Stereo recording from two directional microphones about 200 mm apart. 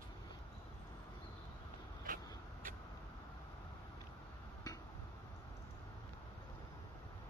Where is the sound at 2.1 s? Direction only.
45° right (ahead or behind).